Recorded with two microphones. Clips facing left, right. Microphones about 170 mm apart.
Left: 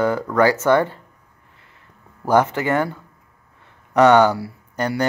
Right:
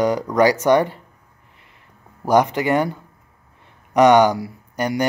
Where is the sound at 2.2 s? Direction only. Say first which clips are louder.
Right 1 dB; 15° right (ahead or behind).